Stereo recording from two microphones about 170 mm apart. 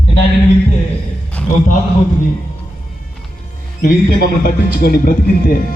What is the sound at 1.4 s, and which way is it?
Music, 5° left (ahead or behind).